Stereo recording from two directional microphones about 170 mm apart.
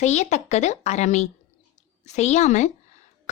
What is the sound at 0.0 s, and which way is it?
A woman's voice, 40° left (ahead or behind).